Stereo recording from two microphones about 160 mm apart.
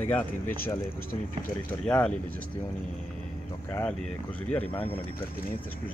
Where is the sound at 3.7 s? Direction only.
10° left (ahead or behind).